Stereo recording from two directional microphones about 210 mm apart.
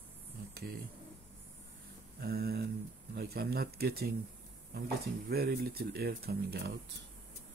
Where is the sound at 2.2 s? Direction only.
45° right (ahead or behind).